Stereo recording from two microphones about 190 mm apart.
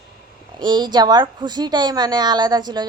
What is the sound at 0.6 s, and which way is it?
A woman's voice, 25° right (ahead or behind).